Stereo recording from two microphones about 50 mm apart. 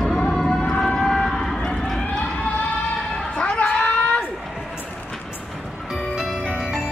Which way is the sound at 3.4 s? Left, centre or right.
Left.